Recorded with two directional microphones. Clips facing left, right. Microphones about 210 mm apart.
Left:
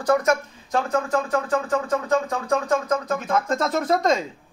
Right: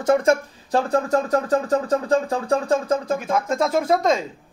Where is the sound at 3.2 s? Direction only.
10° right (ahead or behind).